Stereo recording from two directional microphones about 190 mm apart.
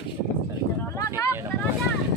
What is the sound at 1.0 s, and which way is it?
Vehicle, 15° left (ahead or behind).